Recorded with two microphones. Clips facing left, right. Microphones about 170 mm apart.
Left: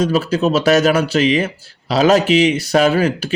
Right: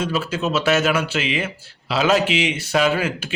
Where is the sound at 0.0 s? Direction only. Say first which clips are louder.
Left 7 dB; 35° left (ahead or behind).